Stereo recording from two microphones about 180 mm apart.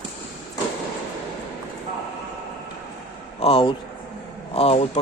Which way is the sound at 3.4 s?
30° left (ahead or behind).